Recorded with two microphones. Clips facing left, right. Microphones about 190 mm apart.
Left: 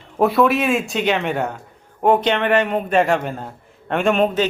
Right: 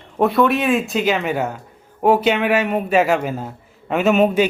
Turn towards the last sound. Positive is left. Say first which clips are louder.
# right 2 dB
turn(degrees=-10)  # may be behind; listen again after turning